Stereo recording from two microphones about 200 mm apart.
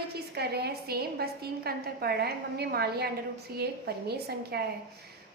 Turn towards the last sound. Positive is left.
turn(degrees=-55)  # may be behind; listen again after turning